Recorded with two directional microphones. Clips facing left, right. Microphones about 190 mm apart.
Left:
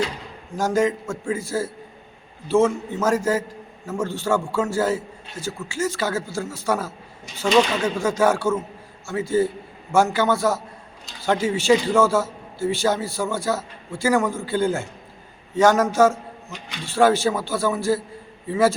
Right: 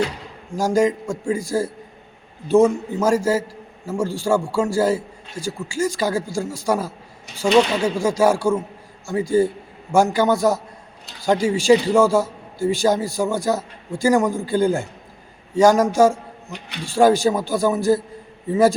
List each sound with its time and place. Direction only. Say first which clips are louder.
0.5 s a man's voice: right 3 dB; 10° right (ahead or behind)
16.5 s speech: right 4 dB; 60° right (ahead or behind)
16.8 s a man's voice: right 3 dB; 15° right (ahead or behind)